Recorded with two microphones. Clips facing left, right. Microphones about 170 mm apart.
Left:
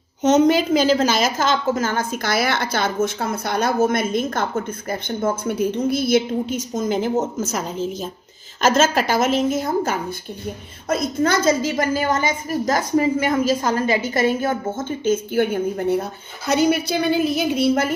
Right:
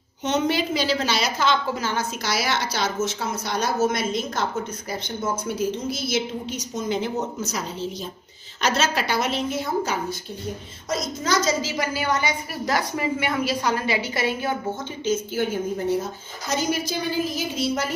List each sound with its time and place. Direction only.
0.2 s a woman's voice: 45° left (ahead or behind)
10.9 s a woman's voice: 55° left (ahead or behind)